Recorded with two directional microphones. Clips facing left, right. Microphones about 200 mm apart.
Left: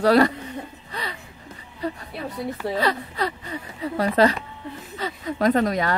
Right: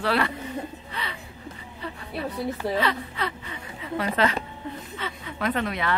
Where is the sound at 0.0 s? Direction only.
40° left (ahead or behind).